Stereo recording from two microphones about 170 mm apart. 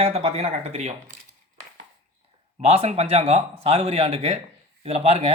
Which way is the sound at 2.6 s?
35° right (ahead or behind).